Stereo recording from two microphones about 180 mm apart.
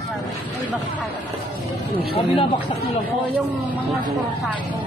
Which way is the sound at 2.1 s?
30° left (ahead or behind).